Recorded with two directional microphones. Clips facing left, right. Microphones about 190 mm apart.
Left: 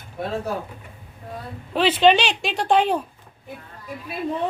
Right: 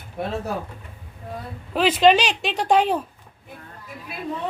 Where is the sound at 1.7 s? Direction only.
5° right (ahead or behind).